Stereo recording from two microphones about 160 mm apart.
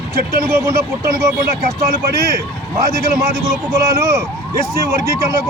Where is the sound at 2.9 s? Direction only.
20° right (ahead or behind).